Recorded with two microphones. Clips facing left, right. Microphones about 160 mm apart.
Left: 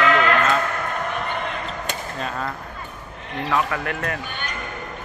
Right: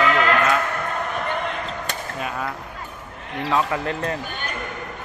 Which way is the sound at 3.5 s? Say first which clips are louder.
Right 1 dB; 25° right (ahead or behind).